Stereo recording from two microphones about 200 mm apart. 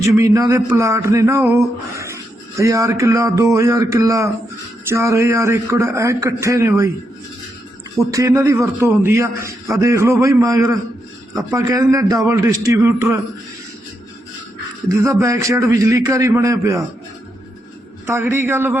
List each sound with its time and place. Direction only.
0.0 s a man's voice: 15° right (ahead or behind)
8.1 s a man's voice: 15° right (ahead or behind)
14.8 s a man's voice: 15° right (ahead or behind)
18.0 s a man's voice: 10° right (ahead or behind)